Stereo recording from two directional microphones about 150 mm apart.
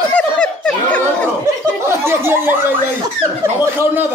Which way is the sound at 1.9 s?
15° right (ahead or behind).